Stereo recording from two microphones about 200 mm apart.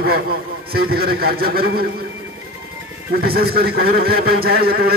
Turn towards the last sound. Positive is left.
turn(degrees=-50)  # may be behind; listen again after turning